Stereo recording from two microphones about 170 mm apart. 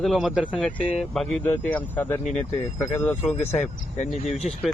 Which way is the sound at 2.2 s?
40° left (ahead or behind).